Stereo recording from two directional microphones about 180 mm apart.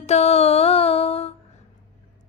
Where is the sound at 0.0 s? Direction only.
35° left (ahead or behind).